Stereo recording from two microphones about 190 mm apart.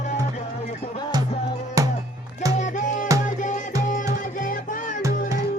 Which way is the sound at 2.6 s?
45° left (ahead or behind).